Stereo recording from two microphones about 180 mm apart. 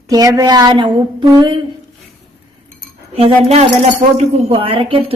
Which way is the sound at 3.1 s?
35° right (ahead or behind).